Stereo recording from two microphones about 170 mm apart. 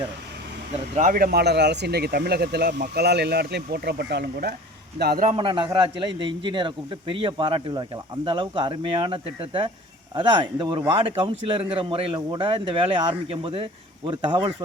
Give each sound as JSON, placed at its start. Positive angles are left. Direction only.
{"t": 0.7, "sound": "speech", "side_deg": -45}
{"t": 5.4, "sound": "a man's voice", "side_deg": -30}